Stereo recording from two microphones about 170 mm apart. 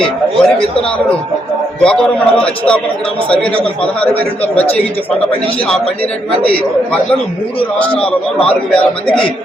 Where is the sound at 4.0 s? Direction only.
10° left (ahead or behind).